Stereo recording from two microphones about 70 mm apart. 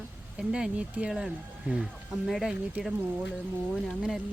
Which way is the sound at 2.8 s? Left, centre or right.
Right.